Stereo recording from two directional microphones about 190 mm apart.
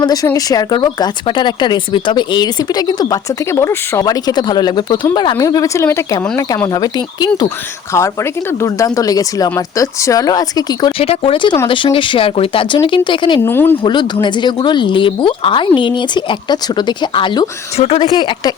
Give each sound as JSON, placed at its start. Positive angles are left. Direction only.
{"t": 0.0, "sound": "speech", "side_deg": 20}
{"t": 13.4, "sound": "speech", "side_deg": 10}
{"t": 13.8, "sound": "speech", "side_deg": 25}
{"t": 18.1, "sound": "speech", "side_deg": 20}